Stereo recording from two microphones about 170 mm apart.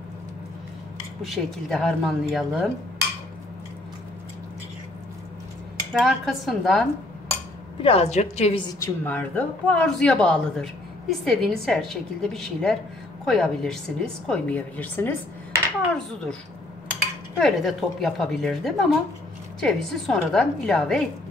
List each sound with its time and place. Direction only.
1.2 s speech: centre (ahead or behind)
5.9 s speech: centre (ahead or behind)
7.8 s a woman's voice: 40° left (ahead or behind)
8.7 s speech: 15° left (ahead or behind)
17.4 s speech: centre (ahead or behind)